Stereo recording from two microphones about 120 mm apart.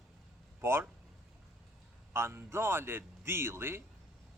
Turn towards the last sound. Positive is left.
turn(degrees=-20)  # may be behind; listen again after turning